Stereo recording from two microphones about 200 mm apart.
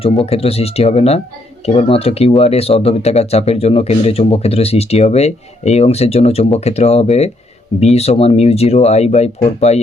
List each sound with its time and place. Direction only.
0.0 s speech: 30° left (ahead or behind)